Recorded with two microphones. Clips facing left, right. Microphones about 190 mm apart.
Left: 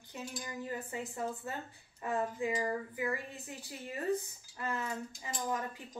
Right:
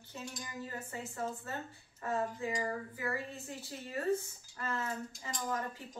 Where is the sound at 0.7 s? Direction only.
15° left (ahead or behind).